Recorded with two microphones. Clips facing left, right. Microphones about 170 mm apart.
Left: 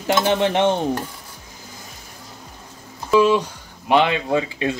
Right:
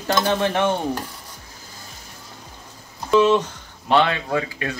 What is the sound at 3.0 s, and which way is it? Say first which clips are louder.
Speech: even; 5° left (ahead or behind).